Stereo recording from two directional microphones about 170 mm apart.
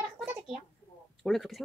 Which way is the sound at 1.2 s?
Centre (ahead or behind).